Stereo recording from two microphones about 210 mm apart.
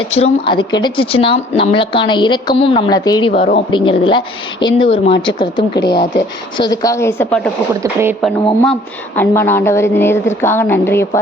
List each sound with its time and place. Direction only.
0.0 s a woman's voice: 25° left (ahead or behind)
5.7 s speech: 50° left (ahead or behind)
6.6 s a woman's voice: 15° left (ahead or behind)
7.8 s speech: 15° right (ahead or behind)
9.1 s a woman's voice: 10° left (ahead or behind)